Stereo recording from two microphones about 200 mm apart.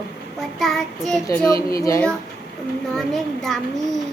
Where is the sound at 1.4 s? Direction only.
15° left (ahead or behind).